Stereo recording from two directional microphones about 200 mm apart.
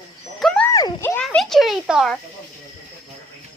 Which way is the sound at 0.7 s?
20° left (ahead or behind).